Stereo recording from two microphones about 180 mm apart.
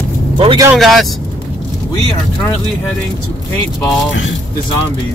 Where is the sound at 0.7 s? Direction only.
Centre (ahead or behind).